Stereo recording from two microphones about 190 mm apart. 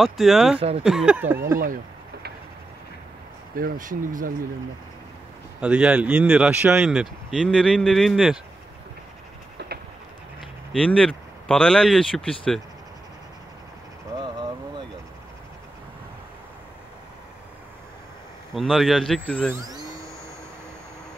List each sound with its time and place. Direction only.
0.0 s speech: centre (ahead or behind)
0.6 s speech: 30° right (ahead or behind)
0.8 s speech: 5° right (ahead or behind)
3.5 s speech: 45° right (ahead or behind)
5.6 s speech: 5° right (ahead or behind)
9.6 s pigeon: 60° right (ahead or behind)
10.7 s speech: 5° left (ahead or behind)
14.2 s vehicle: 25° right (ahead or behind)
18.5 s speech: centre (ahead or behind)
19.5 s vacuum cleaner: 20° right (ahead or behind)